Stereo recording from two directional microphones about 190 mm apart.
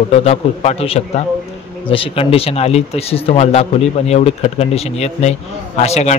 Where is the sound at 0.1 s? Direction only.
35° left (ahead or behind).